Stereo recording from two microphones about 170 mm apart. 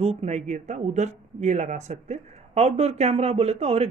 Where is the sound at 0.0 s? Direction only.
40° right (ahead or behind).